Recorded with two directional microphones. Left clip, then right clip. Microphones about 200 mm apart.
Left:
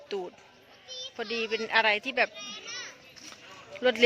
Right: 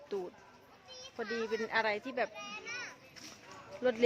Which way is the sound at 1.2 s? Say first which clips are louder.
Left 5 dB; centre (ahead or behind).